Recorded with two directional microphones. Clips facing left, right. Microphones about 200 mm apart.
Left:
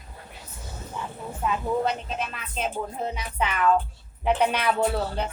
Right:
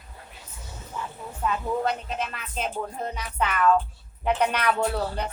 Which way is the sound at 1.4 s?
5° left (ahead or behind).